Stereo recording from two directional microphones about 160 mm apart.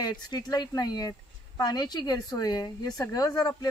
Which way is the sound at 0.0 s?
25° left (ahead or behind).